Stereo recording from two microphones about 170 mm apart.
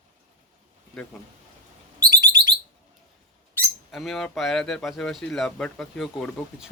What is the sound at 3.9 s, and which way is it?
Speech, centre (ahead or behind).